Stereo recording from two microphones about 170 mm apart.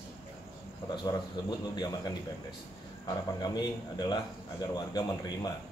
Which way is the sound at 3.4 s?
25° left (ahead or behind).